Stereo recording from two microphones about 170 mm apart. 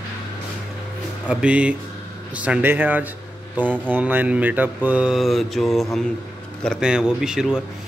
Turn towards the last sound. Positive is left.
turn(degrees=-5)  # may be behind; listen again after turning